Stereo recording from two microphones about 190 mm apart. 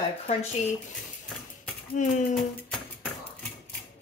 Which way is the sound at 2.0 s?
40° left (ahead or behind).